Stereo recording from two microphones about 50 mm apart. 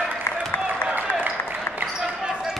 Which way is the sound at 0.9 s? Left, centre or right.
Right.